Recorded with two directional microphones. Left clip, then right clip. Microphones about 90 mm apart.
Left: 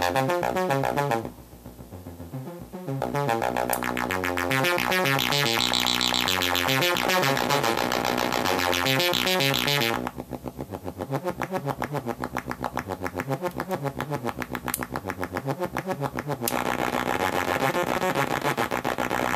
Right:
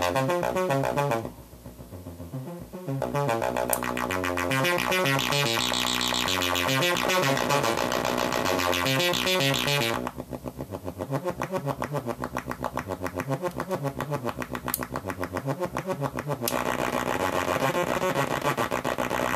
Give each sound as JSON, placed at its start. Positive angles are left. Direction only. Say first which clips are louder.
{"t": 0.0, "sound": "music", "louder": "left 1 dB", "side_deg": 25}
{"t": 3.0, "sound": "music", "louder": "left 1 dB", "side_deg": 25}
{"t": 11.1, "sound": "synthesizer", "louder": "left 1 dB", "side_deg": 25}
{"t": 16.5, "sound": "vehicle", "louder": "left 1 dB", "side_deg": 25}